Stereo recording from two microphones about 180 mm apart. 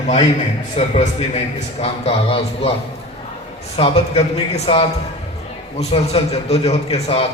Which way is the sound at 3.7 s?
30° left (ahead or behind).